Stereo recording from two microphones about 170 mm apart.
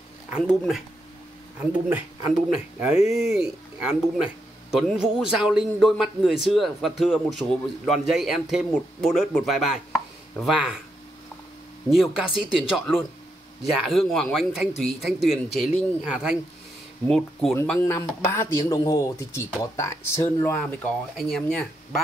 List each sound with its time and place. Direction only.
0.3 s speech: centre (ahead or behind)
1.7 s speech: 15° right (ahead or behind)
3.1 s speech: 5° right (ahead or behind)
11.9 s speech: centre (ahead or behind)
17.6 s speech: 15° left (ahead or behind)
21.2 s speech: centre (ahead or behind)